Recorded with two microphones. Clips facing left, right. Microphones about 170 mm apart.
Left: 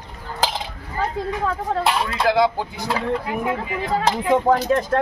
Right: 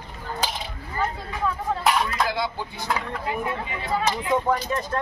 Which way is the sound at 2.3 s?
90° left.